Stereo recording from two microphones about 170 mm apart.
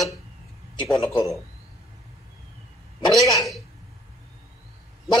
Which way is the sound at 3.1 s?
Centre (ahead or behind).